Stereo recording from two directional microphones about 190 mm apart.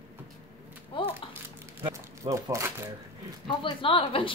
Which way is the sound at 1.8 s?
15° right (ahead or behind).